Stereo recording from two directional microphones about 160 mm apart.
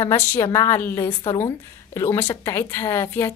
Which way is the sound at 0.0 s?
15° left (ahead or behind).